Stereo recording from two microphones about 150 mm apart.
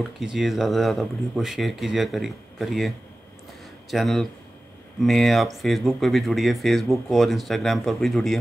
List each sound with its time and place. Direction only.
0.2 s speech: centre (ahead or behind)
3.9 s speech: centre (ahead or behind)